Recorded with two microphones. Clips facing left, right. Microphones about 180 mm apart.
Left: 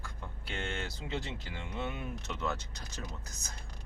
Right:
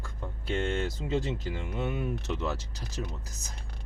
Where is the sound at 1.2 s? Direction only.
45° right (ahead or behind).